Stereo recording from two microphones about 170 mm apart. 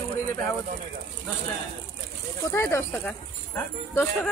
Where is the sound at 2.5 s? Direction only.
15° left (ahead or behind).